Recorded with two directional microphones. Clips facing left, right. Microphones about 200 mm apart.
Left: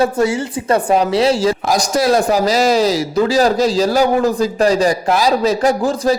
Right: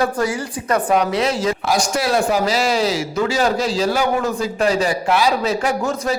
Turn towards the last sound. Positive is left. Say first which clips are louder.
# left 6 dB
turn(degrees=40)  # may be behind; listen again after turning